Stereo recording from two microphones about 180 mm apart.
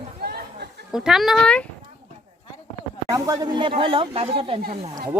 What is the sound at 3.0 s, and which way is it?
Speech, 20° right (ahead or behind).